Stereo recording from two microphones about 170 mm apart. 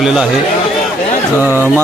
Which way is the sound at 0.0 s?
5° right (ahead or behind).